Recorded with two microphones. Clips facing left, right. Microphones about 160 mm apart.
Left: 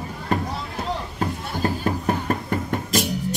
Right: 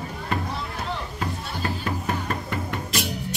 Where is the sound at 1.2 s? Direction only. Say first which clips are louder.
Left 4 dB; 40° left (ahead or behind).